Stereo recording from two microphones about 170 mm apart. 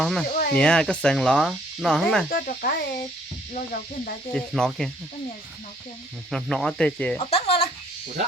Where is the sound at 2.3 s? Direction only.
60° left (ahead or behind).